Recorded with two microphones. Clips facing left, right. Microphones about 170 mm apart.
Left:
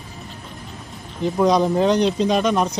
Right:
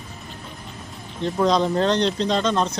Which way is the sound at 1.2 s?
10° left (ahead or behind).